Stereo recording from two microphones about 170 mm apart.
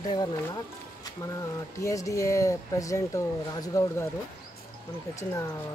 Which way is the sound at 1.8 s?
20° left (ahead or behind).